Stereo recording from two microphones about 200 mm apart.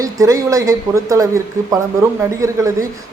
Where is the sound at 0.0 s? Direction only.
15° right (ahead or behind).